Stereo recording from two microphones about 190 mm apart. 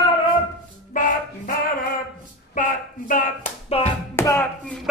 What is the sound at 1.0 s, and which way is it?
Music, 45° left (ahead or behind).